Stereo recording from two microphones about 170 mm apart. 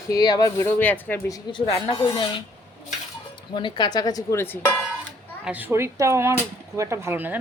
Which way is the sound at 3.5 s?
30° left (ahead or behind).